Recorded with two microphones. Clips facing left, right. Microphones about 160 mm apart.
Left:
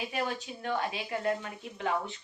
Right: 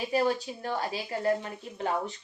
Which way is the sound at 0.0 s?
35° right (ahead or behind).